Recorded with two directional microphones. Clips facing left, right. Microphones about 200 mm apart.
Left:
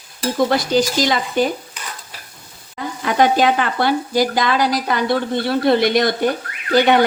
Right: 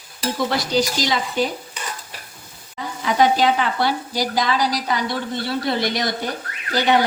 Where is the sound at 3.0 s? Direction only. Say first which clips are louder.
Left 2 dB; 55° left (ahead or behind).